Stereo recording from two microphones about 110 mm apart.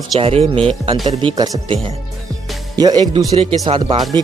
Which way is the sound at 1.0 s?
40° right (ahead or behind).